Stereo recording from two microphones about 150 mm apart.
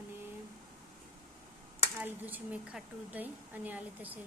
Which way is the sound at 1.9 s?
10° right (ahead or behind).